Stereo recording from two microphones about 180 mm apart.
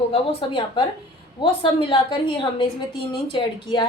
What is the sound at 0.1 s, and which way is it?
A woman's voice, 30° left (ahead or behind).